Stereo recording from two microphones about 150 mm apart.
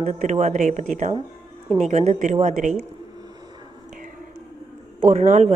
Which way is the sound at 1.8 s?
50° right (ahead or behind).